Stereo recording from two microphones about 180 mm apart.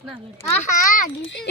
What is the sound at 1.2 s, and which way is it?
Speech, 85° left.